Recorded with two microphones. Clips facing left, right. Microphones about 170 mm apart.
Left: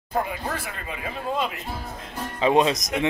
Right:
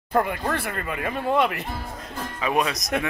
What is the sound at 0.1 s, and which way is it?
Speech, 60° right (ahead or behind).